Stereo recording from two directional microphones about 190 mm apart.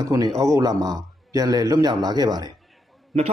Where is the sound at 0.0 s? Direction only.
15° right (ahead or behind).